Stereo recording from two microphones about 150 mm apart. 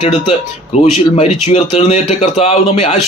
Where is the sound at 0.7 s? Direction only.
50° left (ahead or behind).